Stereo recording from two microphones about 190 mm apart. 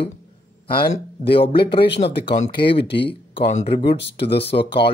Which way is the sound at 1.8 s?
60° left (ahead or behind).